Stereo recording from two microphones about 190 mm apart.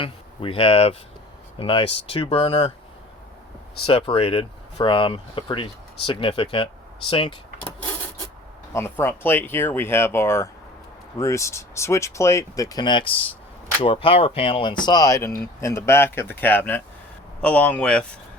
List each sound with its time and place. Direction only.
0.0 s speech: 30° left (ahead or behind)
3.8 s speech: 30° left (ahead or behind)
8.7 s speech: 10° left (ahead or behind)